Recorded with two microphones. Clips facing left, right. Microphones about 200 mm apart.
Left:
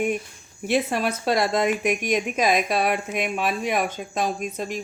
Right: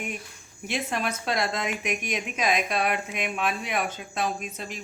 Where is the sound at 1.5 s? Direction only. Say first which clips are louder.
Left 9 dB; 50° left (ahead or behind).